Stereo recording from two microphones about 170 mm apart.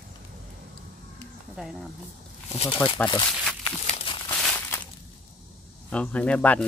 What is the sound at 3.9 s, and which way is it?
Crumpling, 30° left (ahead or behind).